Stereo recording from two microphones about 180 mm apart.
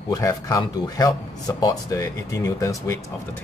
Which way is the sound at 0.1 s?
20° left (ahead or behind).